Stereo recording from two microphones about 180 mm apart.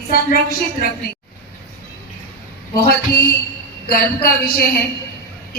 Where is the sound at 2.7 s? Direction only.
60° left (ahead or behind).